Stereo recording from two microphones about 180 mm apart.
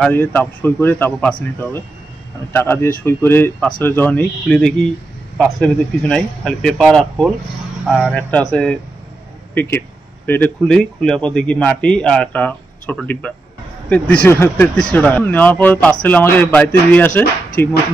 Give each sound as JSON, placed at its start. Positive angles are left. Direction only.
{"t": 0.0, "sound": "speech", "side_deg": 10}
{"t": 8.1, "sound": "speech", "side_deg": 10}